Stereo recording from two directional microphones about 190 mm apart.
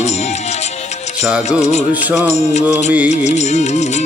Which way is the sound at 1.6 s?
35° left (ahead or behind).